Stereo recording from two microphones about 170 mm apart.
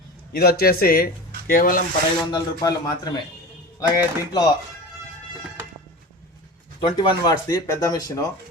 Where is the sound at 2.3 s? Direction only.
25° left (ahead or behind).